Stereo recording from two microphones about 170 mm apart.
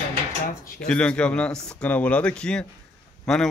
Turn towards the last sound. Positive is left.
turn(degrees=0)  # may be behind; listen again after turning